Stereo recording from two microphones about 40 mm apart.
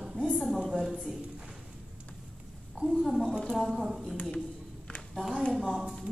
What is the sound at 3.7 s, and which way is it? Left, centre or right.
Speech, centre.